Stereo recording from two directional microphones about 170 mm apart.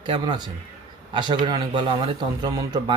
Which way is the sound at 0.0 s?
30° right (ahead or behind).